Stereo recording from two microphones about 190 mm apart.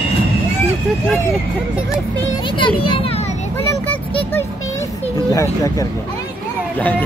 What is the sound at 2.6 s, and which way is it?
Speech, 25° left (ahead or behind).